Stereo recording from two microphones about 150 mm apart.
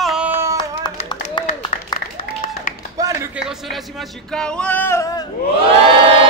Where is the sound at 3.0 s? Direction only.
25° right (ahead or behind).